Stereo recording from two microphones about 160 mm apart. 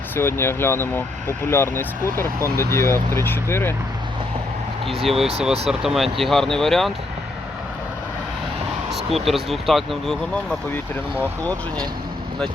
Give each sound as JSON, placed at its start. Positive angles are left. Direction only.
{"t": 0.2, "sound": "speech", "side_deg": 15}
{"t": 5.0, "sound": "speech", "side_deg": 0}
{"t": 8.9, "sound": "speech", "side_deg": 0}